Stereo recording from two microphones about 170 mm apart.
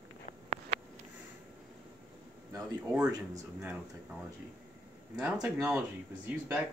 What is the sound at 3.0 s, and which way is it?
Speech, 20° right (ahead or behind).